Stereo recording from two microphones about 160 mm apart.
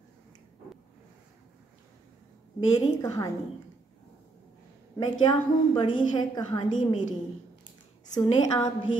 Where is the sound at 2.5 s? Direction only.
20° left (ahead or behind).